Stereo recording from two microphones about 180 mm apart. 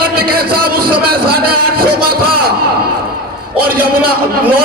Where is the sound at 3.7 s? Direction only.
55° right (ahead or behind).